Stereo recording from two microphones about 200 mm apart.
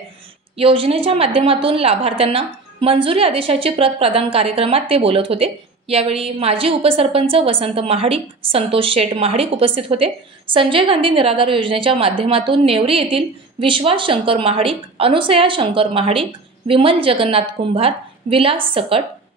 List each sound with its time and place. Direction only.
0.6 s a woman's voice: 30° right (ahead or behind)